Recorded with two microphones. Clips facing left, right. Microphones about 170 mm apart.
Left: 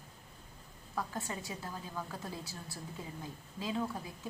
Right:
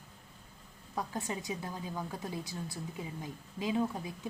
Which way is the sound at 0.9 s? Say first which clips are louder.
Right 2 dB; 20° right (ahead or behind).